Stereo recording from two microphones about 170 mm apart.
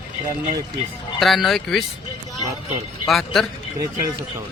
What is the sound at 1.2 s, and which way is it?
Speech, centre (ahead or behind).